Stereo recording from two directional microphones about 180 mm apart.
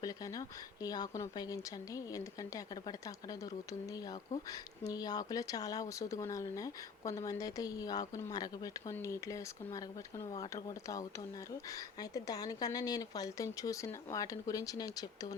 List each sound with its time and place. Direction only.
0.0 s speech: 20° left (ahead or behind)
4.8 s speech: 20° left (ahead or behind)
12.1 s speech: 20° left (ahead or behind)